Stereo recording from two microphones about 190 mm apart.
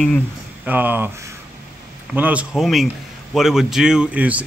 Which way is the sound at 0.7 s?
10° right (ahead or behind).